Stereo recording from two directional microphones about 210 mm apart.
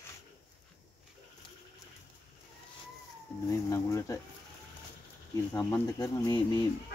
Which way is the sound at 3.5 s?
15° left (ahead or behind).